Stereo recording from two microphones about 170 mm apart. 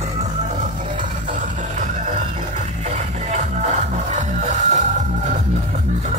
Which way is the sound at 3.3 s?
45° right (ahead or behind).